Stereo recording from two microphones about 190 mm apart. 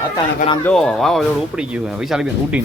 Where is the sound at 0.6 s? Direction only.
5° left (ahead or behind).